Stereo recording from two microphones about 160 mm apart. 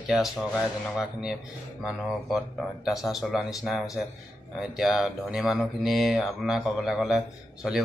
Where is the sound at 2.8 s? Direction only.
Centre (ahead or behind).